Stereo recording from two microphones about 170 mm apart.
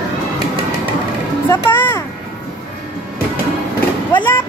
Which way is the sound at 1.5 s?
10° left (ahead or behind).